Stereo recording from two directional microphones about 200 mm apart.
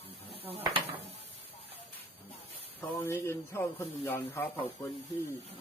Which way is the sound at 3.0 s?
15° left (ahead or behind).